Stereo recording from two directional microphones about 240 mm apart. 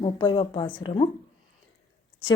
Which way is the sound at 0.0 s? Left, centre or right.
Centre.